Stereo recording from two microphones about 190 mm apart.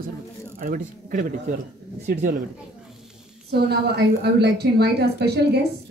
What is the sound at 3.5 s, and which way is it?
A woman's voice, 60° right (ahead or behind).